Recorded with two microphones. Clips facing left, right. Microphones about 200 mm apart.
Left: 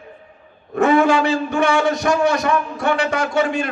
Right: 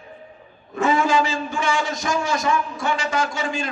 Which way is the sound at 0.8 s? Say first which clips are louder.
Left 5 dB; 60° left (ahead or behind).